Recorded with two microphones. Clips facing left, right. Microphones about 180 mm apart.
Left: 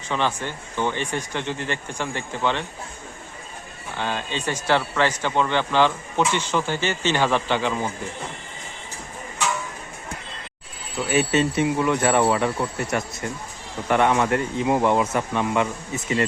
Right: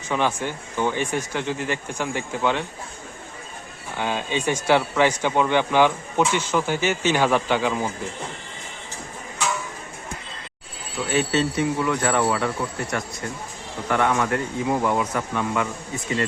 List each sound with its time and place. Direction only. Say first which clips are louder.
0.1 s speech: right 1 dB; 10° right (ahead or behind)
3.9 s speech: right 2 dB; 10° right (ahead or behind)
11.1 s speech: left 2 dB; 15° left (ahead or behind)